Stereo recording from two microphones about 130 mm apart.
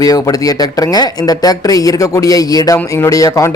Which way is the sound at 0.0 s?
30° left (ahead or behind).